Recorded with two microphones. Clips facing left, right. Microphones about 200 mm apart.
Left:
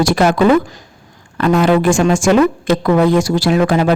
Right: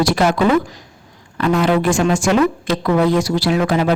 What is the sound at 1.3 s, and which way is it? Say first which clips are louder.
A woman's voice: left 3 dB; 50° left (ahead or behind).